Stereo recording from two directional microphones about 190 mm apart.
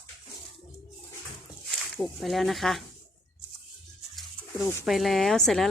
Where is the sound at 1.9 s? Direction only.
Centre (ahead or behind).